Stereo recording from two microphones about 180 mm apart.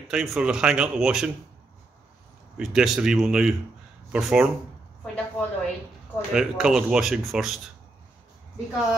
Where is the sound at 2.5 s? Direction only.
5° right (ahead or behind).